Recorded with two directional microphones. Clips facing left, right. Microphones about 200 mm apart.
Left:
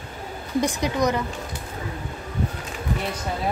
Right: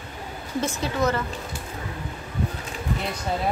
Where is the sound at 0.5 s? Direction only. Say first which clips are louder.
Left 3 dB; 15° left (ahead or behind).